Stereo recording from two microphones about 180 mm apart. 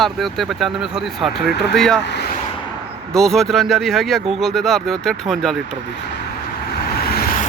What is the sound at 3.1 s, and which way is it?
Speech, centre (ahead or behind).